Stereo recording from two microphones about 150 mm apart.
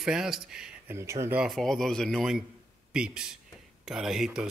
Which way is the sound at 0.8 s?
20° right (ahead or behind).